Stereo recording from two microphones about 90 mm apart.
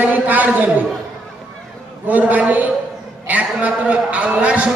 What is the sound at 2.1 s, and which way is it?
A man's voice, 20° right (ahead or behind).